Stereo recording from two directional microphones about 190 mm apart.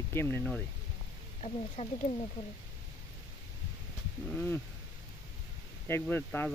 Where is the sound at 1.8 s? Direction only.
40° left (ahead or behind).